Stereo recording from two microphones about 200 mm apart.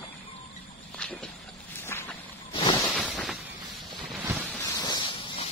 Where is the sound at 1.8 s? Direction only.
10° left (ahead or behind).